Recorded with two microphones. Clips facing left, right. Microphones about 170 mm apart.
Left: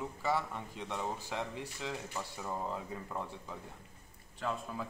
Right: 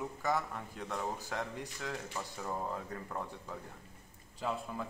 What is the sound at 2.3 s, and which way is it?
Speech, 5° left (ahead or behind).